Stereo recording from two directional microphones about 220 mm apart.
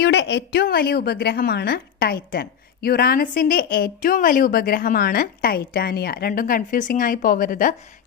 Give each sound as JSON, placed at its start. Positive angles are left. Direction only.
{"t": 0.0, "sound": "a woman's voice", "side_deg": 55}